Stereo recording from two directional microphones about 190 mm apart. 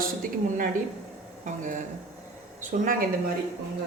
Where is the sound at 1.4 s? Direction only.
40° right (ahead or behind).